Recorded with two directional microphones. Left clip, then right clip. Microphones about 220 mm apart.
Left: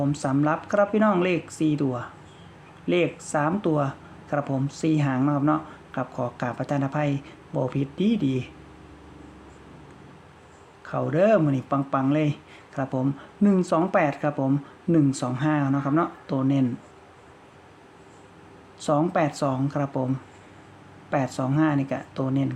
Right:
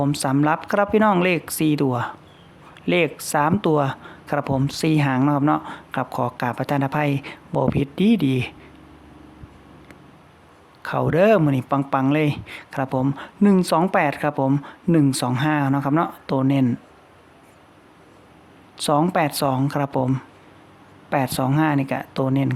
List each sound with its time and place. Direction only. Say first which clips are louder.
0.0 s speech: right 4 dB; 35° right (ahead or behind)
10.8 s speech: right 4 dB; 35° right (ahead or behind)
18.8 s speech: right 4 dB; 35° right (ahead or behind)